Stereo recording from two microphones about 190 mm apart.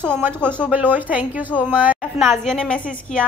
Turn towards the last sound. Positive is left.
turn(degrees=5)  # may be behind; listen again after turning